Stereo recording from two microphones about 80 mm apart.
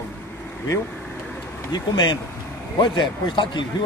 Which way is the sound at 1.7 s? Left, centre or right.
Left.